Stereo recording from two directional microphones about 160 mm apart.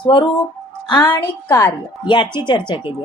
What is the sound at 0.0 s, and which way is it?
A woman's voice, 30° left (ahead or behind).